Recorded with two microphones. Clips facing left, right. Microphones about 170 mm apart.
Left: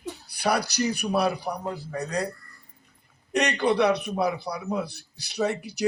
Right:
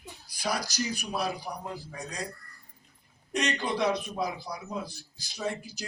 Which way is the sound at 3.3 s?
65° left (ahead or behind).